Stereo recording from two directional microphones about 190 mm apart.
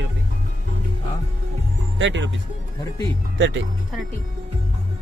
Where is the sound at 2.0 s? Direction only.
75° right (ahead or behind).